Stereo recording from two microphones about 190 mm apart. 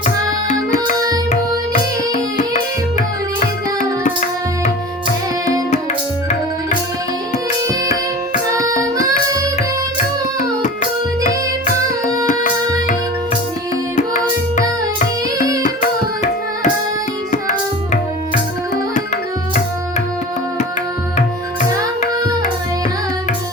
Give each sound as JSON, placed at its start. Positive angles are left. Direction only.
{"t": 0.0, "sound": "music", "side_deg": 40}
{"t": 3.4, "sound": "tabla", "side_deg": 45}
{"t": 11.2, "sound": "music", "side_deg": 50}
{"t": 13.9, "sound": "tabla", "side_deg": 40}
{"t": 15.6, "sound": "carnatic music", "side_deg": 40}